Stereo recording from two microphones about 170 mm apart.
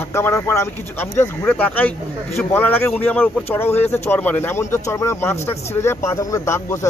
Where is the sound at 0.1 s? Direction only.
15° left (ahead or behind).